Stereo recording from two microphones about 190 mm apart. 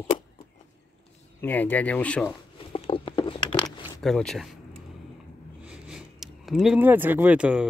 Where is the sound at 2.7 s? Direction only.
25° left (ahead or behind).